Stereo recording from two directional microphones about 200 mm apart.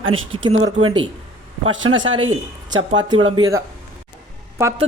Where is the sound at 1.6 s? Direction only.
75° right (ahead or behind).